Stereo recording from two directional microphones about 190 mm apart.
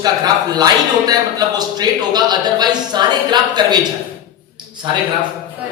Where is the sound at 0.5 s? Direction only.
20° right (ahead or behind).